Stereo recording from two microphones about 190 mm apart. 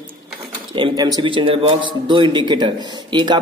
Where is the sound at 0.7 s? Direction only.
25° right (ahead or behind).